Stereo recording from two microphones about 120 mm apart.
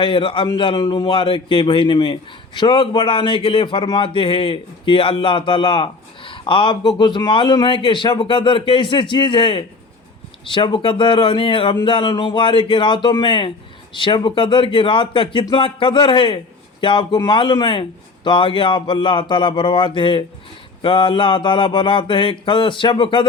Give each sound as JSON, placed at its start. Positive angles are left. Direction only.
{"t": 0.0, "sound": "speech", "side_deg": 45}